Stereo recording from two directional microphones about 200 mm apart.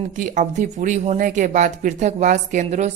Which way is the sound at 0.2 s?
40° right (ahead or behind).